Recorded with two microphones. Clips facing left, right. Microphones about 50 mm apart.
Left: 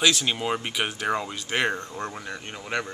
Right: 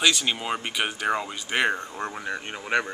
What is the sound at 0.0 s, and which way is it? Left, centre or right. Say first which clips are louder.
Speech: even; centre.